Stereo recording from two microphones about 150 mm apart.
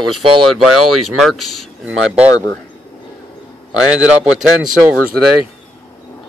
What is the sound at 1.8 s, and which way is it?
Speech, 10° right (ahead or behind).